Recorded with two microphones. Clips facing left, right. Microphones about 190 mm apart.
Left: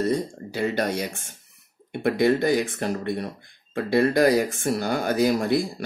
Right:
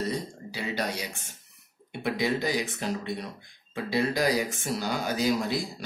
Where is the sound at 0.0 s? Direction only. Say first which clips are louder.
Left 7 dB; 50° left (ahead or behind).